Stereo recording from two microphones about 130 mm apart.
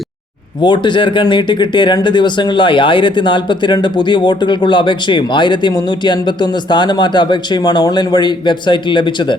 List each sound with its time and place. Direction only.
0.6 s speech: 35° left (ahead or behind)